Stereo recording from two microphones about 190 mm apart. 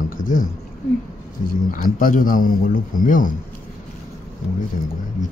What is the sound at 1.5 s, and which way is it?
A man's voice, 45° left (ahead or behind).